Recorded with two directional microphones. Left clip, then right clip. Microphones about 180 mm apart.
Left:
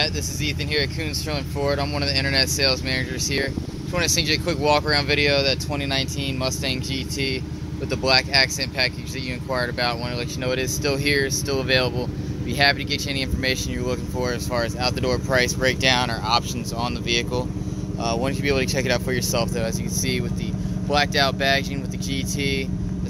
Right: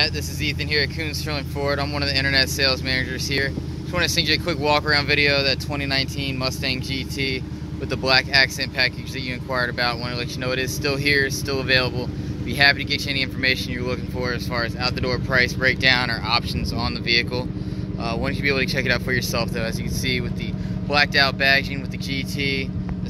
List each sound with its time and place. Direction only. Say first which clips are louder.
0.0 s speech: right 1 dB; 10° left (ahead or behind)